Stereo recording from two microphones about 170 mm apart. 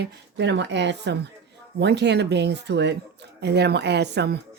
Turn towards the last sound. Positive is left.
turn(degrees=-80)